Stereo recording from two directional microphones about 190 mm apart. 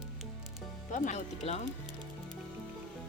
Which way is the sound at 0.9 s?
40° left (ahead or behind).